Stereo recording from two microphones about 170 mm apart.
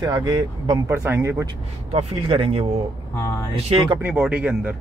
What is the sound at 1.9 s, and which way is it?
Speech, 35° right (ahead or behind).